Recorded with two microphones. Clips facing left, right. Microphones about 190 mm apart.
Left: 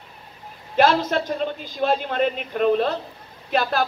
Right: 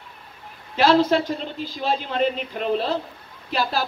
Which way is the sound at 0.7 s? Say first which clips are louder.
Right 1 dB; 50° left (ahead or behind).